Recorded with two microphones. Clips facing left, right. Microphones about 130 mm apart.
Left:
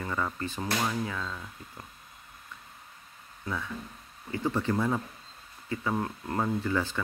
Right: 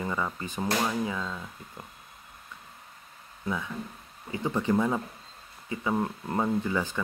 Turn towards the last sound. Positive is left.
turn(degrees=-15)  # may be behind; listen again after turning